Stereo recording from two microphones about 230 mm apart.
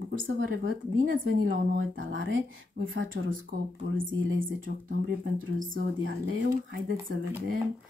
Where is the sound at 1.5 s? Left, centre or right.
Right.